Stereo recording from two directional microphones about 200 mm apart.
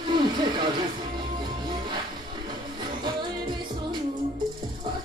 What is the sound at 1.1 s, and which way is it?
Music, 20° right (ahead or behind).